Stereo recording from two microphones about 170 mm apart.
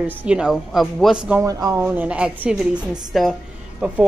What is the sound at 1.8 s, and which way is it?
Speech, 10° right (ahead or behind).